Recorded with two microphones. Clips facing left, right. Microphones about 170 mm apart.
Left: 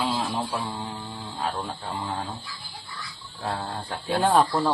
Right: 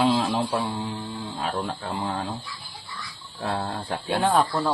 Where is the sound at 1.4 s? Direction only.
80° right.